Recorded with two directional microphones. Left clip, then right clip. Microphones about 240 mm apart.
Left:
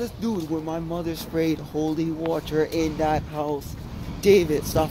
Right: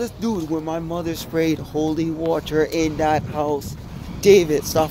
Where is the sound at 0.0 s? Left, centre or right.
Right.